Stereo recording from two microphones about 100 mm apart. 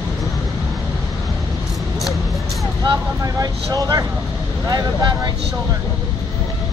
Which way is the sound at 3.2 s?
35° right (ahead or behind).